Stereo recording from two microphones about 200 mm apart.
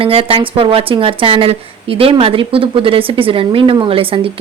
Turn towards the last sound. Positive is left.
turn(degrees=-25)  # may be behind; listen again after turning